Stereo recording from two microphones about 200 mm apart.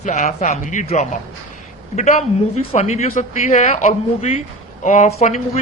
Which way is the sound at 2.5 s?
35° left (ahead or behind).